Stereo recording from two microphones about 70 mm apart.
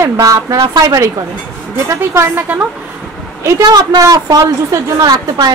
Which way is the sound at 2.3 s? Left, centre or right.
Right.